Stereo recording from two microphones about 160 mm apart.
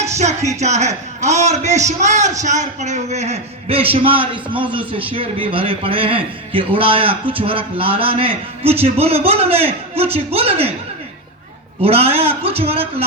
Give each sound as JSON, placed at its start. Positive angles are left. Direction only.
{"t": 0.6, "sound": "a man's voice", "side_deg": -45}
{"t": 11.8, "sound": "a man's voice", "side_deg": -40}